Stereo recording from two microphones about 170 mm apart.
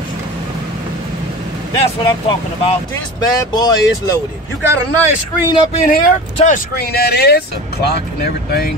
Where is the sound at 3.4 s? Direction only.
25° left (ahead or behind).